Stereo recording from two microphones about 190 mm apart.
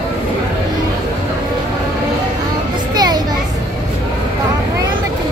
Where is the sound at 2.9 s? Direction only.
20° right (ahead or behind).